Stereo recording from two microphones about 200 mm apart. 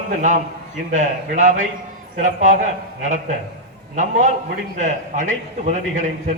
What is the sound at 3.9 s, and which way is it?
A man's voice, 35° right (ahead or behind).